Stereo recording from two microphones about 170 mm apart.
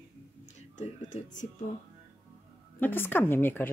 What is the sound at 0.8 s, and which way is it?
Speech, 45° left (ahead or behind).